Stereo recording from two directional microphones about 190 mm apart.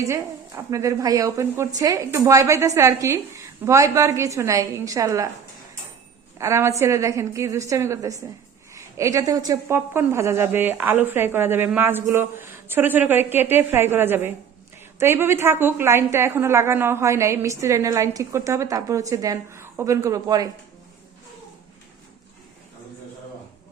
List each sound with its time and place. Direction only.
0.0 s a woman's voice: 15° right (ahead or behind)
6.4 s a woman's voice: 15° right (ahead or behind)